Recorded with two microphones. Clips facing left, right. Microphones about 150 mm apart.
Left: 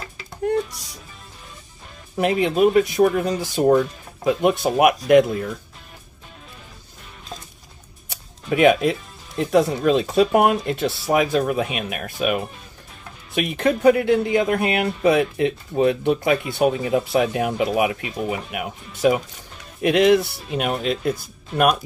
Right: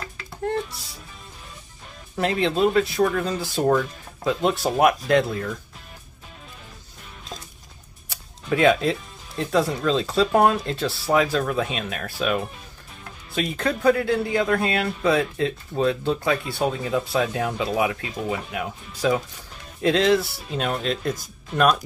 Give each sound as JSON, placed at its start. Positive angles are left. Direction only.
{"t": 2.1, "sound": "speech", "side_deg": 15}
{"t": 8.1, "sound": "music", "side_deg": 20}
{"t": 9.4, "sound": "speech", "side_deg": 20}